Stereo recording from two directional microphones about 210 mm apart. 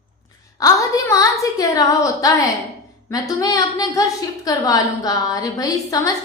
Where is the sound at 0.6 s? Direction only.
15° left (ahead or behind).